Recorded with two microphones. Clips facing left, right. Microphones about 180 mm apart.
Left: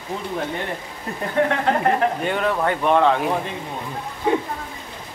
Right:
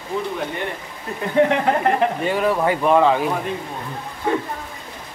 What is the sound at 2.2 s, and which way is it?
Speech, 5° right (ahead or behind).